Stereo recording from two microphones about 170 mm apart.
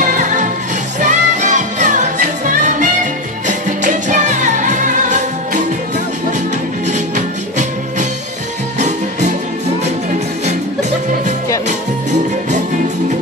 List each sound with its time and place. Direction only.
0.0 s music: 45° right (ahead or behind)
6.9 s music: 45° right (ahead or behind)
10.4 s music: 40° right (ahead or behind)